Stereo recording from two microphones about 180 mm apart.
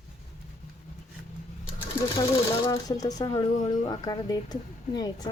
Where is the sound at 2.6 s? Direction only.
20° left (ahead or behind).